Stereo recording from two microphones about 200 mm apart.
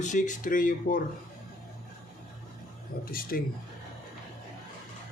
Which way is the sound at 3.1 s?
45° left (ahead or behind).